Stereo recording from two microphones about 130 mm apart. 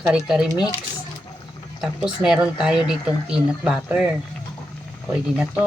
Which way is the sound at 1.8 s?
5° right (ahead or behind).